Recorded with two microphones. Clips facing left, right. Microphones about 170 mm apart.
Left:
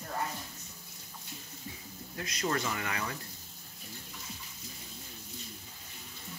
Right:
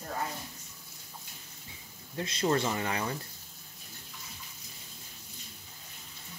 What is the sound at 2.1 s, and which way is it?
Speech, 30° right (ahead or behind).